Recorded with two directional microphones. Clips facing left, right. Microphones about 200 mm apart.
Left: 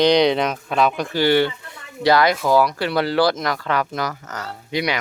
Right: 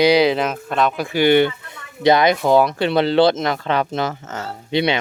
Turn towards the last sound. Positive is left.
turn(degrees=-25)  # may be behind; listen again after turning